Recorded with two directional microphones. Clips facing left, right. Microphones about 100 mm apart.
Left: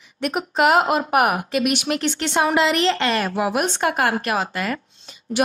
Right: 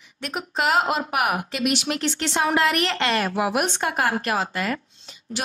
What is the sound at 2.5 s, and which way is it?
Speech, 25° left (ahead or behind).